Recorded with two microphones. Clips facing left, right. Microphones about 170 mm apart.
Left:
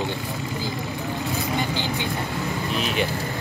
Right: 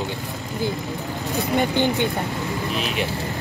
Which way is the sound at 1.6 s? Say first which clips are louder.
Right 6 dB; 55° right (ahead or behind).